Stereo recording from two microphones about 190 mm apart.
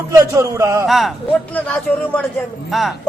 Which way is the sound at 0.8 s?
Centre (ahead or behind).